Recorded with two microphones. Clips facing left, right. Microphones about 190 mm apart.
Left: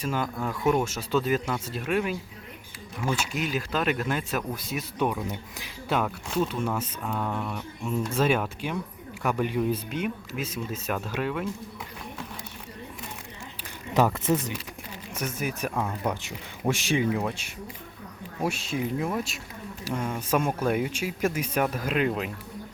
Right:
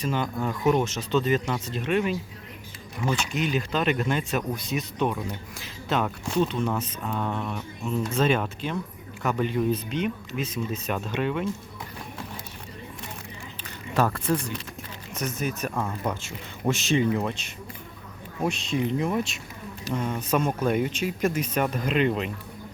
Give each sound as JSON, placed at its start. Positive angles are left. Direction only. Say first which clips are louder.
{"t": 0.0, "sound": "speech", "louder": "right 2 dB", "side_deg": 5}
{"t": 13.9, "sound": "speech", "louder": "left 1 dB", "side_deg": 20}
{"t": 15.1, "sound": "speech", "louder": "right 2 dB", "side_deg": 10}